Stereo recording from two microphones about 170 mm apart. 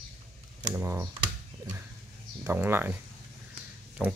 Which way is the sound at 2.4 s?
10° right (ahead or behind).